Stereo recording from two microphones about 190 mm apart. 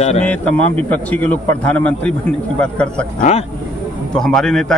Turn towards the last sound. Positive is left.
turn(degrees=5)  # may be behind; listen again after turning